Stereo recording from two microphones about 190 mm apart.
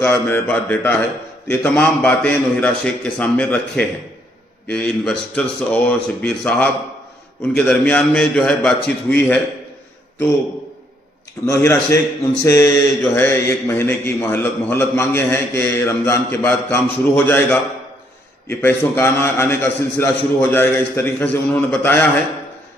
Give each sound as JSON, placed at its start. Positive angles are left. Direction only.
{"t": 0.0, "sound": "a man's voice", "side_deg": 10}
{"t": 11.4, "sound": "a man's voice", "side_deg": 15}